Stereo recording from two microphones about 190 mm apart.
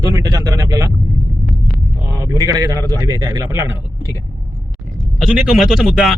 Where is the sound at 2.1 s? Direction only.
15° right (ahead or behind).